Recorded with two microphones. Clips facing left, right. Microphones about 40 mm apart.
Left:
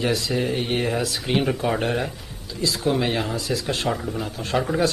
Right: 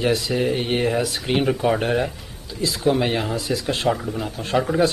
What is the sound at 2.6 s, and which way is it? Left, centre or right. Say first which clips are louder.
Speech: right 2 dB; centre.